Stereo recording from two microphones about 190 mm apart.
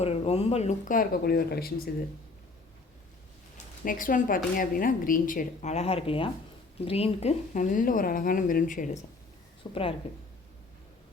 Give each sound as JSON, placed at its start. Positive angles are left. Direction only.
{"t": 0.0, "sound": "a woman's voice", "side_deg": 35}
{"t": 3.8, "sound": "a woman's voice", "side_deg": 45}
{"t": 9.6, "sound": "speech", "side_deg": 25}